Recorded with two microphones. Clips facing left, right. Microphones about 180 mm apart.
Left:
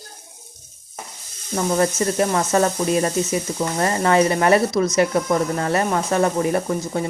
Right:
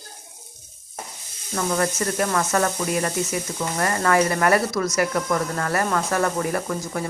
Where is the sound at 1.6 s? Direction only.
25° left (ahead or behind).